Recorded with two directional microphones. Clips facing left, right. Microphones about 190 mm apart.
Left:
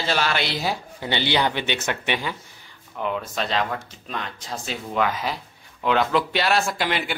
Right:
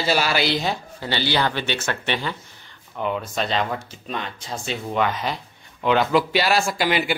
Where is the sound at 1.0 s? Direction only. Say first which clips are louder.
Left 1 dB; 20° left (ahead or behind).